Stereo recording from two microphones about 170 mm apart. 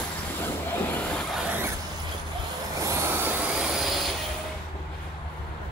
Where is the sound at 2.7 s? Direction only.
15° right (ahead or behind); by 4.1 s centre (ahead or behind).